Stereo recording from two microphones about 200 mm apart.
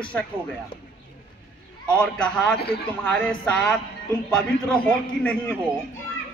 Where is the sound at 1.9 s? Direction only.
5° left (ahead or behind).